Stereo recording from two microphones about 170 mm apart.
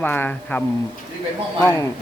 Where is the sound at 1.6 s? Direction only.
20° left (ahead or behind).